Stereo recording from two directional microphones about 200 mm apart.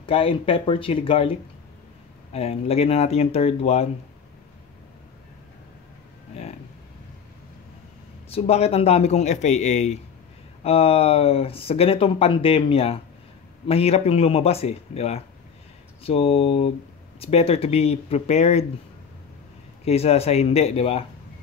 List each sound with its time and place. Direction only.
0.0 s speech: 30° left (ahead or behind)
2.3 s a man's voice: 30° left (ahead or behind)
8.3 s a man's voice: 30° left (ahead or behind)
19.8 s a man's voice: 30° left (ahead or behind)